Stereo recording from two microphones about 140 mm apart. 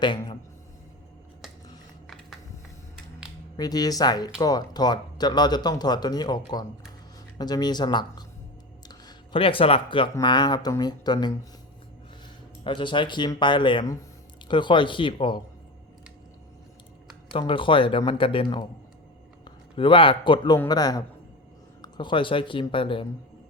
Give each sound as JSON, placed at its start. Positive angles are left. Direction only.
{"t": 3.6, "sound": "speech", "side_deg": 30}
{"t": 12.6, "sound": "speech", "side_deg": 35}
{"t": 17.3, "sound": "a man's voice", "side_deg": 35}